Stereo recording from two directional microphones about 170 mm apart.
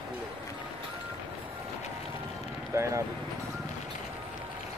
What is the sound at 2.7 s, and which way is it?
Speech, 20° right (ahead or behind).